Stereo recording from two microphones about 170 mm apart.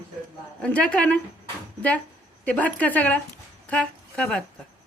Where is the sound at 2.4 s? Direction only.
10° left (ahead or behind).